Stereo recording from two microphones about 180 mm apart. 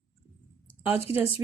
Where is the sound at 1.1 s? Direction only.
30° left (ahead or behind).